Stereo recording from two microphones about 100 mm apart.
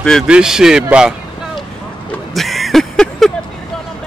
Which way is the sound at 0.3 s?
5° right (ahead or behind).